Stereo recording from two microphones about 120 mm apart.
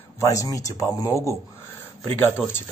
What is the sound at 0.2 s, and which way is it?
Speech, 25° left (ahead or behind).